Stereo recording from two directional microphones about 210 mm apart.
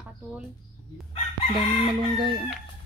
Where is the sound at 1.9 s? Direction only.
25° right (ahead or behind).